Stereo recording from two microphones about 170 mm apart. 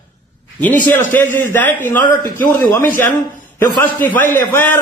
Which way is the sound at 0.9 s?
10° left (ahead or behind).